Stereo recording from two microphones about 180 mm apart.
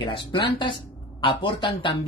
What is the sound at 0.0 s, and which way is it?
Speech, 25° left (ahead or behind).